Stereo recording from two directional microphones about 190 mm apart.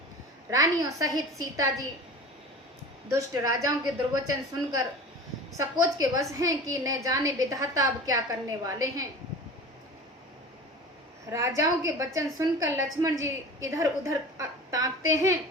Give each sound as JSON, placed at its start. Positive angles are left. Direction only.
{"t": 0.5, "sound": "a woman's voice", "side_deg": -20}
{"t": 3.1, "sound": "a woman's voice", "side_deg": -15}
{"t": 5.5, "sound": "a woman's voice", "side_deg": -20}
{"t": 11.3, "sound": "a woman's voice", "side_deg": -15}